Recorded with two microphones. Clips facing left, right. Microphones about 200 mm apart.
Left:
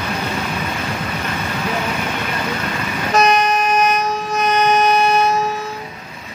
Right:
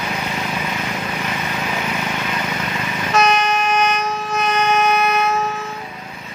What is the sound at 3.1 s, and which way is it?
Vehicle, 35° left (ahead or behind).